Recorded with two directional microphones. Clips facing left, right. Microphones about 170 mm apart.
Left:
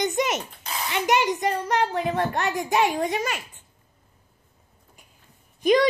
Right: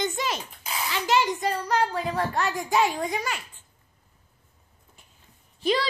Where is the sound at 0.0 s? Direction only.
20° left (ahead or behind).